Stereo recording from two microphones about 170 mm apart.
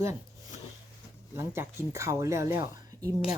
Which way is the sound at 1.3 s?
15° right (ahead or behind).